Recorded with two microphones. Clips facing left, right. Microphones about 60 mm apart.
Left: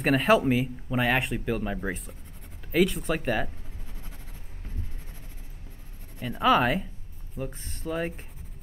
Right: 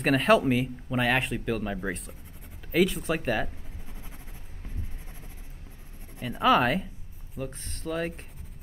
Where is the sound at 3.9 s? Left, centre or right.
Centre.